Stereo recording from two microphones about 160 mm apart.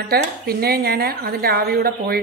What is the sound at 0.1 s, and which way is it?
A woman's voice, 75° right (ahead or behind).